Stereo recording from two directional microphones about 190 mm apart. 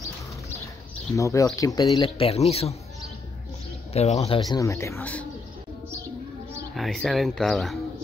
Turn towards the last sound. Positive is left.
turn(degrees=0)  # may be behind; listen again after turning